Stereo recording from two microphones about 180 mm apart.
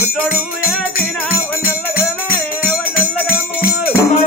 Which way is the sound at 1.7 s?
55° left (ahead or behind).